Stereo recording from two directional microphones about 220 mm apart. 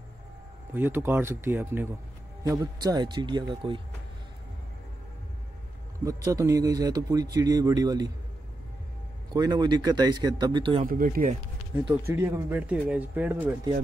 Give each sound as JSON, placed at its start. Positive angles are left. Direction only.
{"t": 0.7, "sound": "speech", "side_deg": -10}
{"t": 6.0, "sound": "speech", "side_deg": -15}
{"t": 9.3, "sound": "speech", "side_deg": -20}
{"t": 10.8, "sound": "speech", "side_deg": -40}
{"t": 12.1, "sound": "speech", "side_deg": -10}